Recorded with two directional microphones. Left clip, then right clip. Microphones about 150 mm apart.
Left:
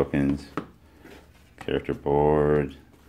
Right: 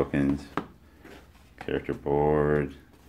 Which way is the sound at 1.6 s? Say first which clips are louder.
Left 3 dB; 25° left (ahead or behind).